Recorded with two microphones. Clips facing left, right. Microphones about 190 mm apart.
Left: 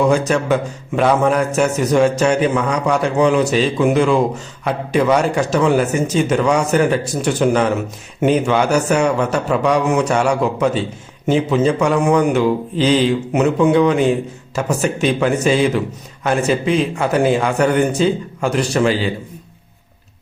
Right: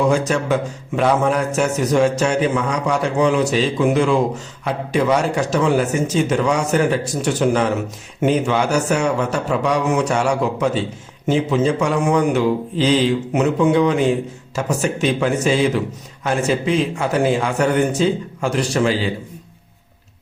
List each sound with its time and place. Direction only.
0.1 s a man's voice: 60° left (ahead or behind)